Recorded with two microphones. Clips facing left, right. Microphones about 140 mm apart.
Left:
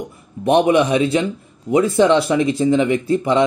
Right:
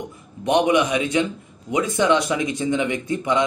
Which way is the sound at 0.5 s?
30° left (ahead or behind).